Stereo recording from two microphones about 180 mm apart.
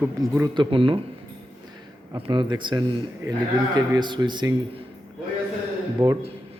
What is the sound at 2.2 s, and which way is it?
Speech, 25° right (ahead or behind).